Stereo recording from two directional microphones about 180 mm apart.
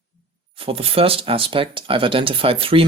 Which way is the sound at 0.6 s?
30° right (ahead or behind).